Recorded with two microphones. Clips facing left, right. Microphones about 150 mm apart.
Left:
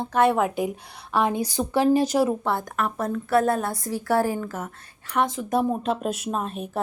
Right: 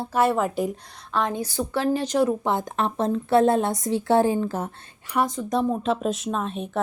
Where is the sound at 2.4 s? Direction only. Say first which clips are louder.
Right 1 dB; 20° right (ahead or behind).